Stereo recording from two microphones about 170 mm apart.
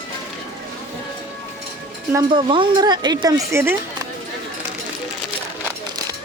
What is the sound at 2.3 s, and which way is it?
A woman's voice, 30° right (ahead or behind).